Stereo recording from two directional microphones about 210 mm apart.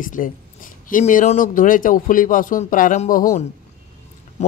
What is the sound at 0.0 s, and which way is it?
Speech, 40° left (ahead or behind).